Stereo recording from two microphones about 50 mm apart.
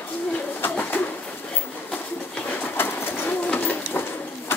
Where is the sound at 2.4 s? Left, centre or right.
Left.